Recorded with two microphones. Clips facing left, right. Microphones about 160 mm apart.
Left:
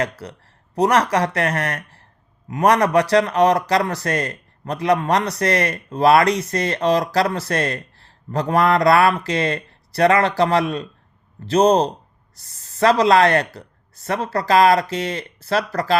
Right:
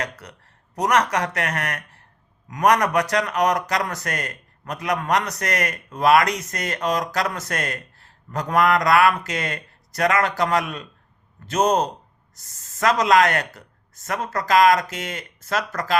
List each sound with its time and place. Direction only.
0.0 s speech: 30° left (ahead or behind)